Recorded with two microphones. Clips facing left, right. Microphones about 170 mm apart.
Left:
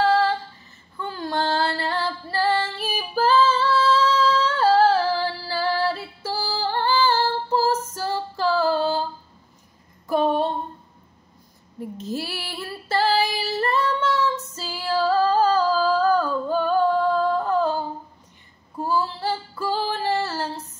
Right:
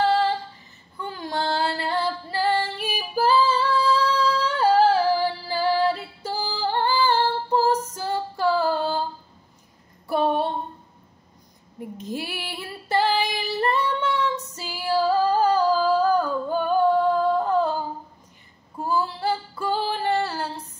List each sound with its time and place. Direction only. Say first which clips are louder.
0.0 s female singing: left 1 dB; 20° right (ahead or behind)
6.3 s music: left 1 dB; 40° left (ahead or behind)
6.6 s female singing: left 1 dB; 15° right (ahead or behind)
12.0 s female singing: left 1 dB; 15° right (ahead or behind)
19.2 s female singing: right 1 dB; 10° right (ahead or behind)